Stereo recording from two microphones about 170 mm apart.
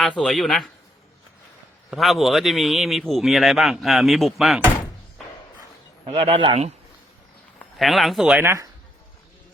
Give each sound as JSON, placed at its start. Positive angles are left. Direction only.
{"t": 0.2, "sound": "speech", "side_deg": 5}
{"t": 1.9, "sound": "speech", "side_deg": 0}
{"t": 6.1, "sound": "speech", "side_deg": -35}
{"t": 7.6, "sound": "speech", "side_deg": 0}